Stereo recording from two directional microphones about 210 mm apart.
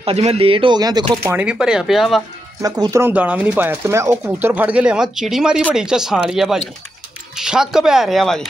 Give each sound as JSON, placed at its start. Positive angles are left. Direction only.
{"t": 0.0, "sound": "speech", "side_deg": -30}
{"t": 1.2, "sound": "speech", "side_deg": -5}
{"t": 2.6, "sound": "speech", "side_deg": -15}